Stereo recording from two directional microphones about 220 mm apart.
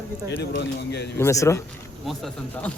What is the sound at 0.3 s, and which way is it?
Speech, 55° left (ahead or behind).